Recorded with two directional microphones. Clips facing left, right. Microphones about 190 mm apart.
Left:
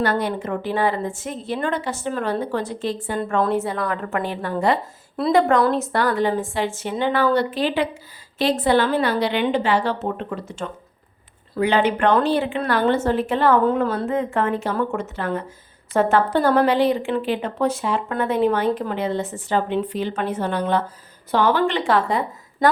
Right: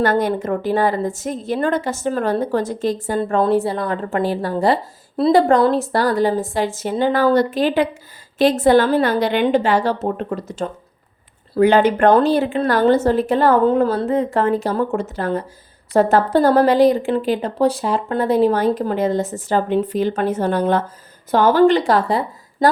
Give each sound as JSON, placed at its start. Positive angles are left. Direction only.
{"t": 0.0, "sound": "speech", "side_deg": -45}
{"t": 3.2, "sound": "speech", "side_deg": -30}